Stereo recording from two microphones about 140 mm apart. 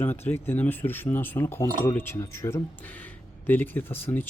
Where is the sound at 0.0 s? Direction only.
15° left (ahead or behind).